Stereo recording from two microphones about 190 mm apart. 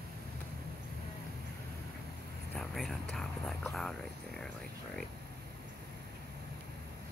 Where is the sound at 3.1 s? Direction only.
Centre (ahead or behind).